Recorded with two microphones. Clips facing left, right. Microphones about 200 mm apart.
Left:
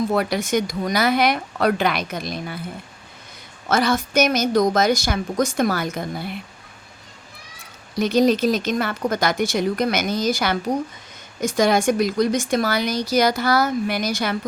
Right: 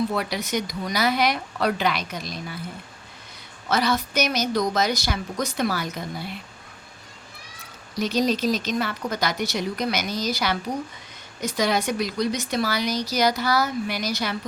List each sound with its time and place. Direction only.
0.1 s speech: 50° left (ahead or behind)
3.7 s speech: 50° left (ahead or behind)
7.9 s speech: 55° left (ahead or behind)